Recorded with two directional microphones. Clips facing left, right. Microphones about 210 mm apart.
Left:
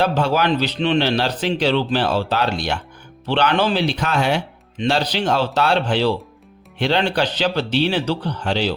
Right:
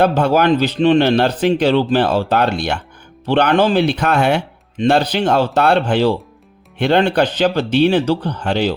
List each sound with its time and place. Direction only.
0.0 s speech: 55° right (ahead or behind)